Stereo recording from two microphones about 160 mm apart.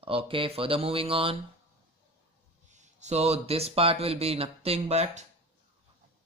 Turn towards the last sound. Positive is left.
turn(degrees=-45)  # may be behind; listen again after turning